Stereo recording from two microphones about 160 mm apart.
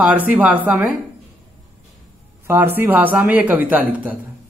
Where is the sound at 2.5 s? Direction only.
15° right (ahead or behind).